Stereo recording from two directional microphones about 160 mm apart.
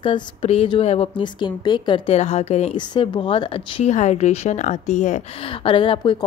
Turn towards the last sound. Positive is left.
turn(degrees=30)  # may be behind; listen again after turning